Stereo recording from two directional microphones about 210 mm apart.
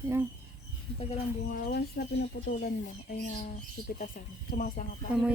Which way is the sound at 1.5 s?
50° left (ahead or behind).